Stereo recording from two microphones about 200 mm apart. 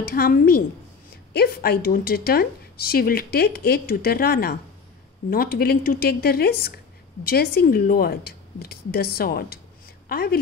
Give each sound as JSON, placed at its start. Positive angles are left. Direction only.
{"t": 0.1, "sound": "a woman's voice", "side_deg": 45}